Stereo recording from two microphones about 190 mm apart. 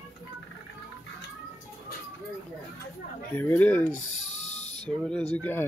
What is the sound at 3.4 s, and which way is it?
Speech, 10° left (ahead or behind).